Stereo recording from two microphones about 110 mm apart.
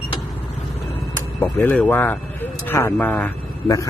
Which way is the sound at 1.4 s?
20° left (ahead or behind).